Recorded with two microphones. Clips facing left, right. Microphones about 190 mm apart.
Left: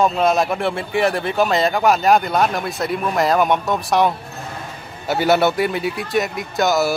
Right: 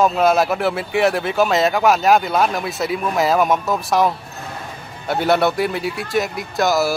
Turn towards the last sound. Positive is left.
turn(degrees=0)  # may be behind; listen again after turning